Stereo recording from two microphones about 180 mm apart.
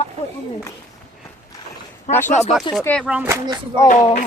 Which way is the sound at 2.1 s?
40° left (ahead or behind).